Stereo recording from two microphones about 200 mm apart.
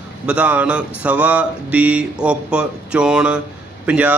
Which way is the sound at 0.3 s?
5° right (ahead or behind).